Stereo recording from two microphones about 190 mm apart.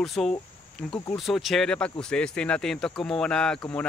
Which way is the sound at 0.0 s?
Centre (ahead or behind).